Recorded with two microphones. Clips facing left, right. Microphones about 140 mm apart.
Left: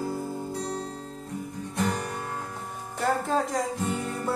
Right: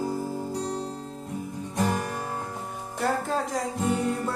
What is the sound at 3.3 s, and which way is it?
Music, centre (ahead or behind).